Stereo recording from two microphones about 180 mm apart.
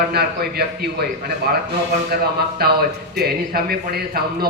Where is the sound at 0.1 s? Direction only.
60° right (ahead or behind).